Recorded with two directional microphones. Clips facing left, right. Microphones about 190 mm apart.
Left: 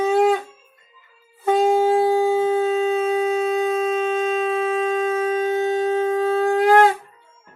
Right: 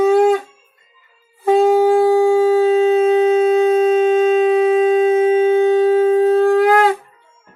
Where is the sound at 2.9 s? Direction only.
35° right (ahead or behind).